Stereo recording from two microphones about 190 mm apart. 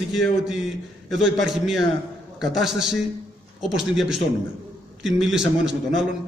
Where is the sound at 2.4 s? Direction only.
Centre (ahead or behind).